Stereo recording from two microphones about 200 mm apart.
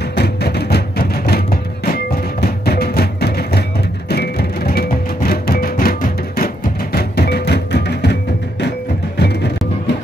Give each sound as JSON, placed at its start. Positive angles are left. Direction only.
{"t": 0.1, "sound": "music", "side_deg": 55}